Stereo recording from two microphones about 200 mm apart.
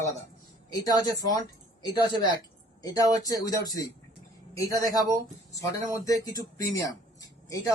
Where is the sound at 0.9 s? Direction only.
20° left (ahead or behind).